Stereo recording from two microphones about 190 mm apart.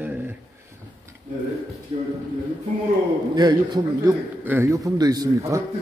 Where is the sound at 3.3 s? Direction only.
20° right (ahead or behind).